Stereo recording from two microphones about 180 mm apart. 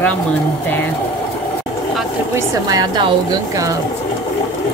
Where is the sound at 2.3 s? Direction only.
20° right (ahead or behind).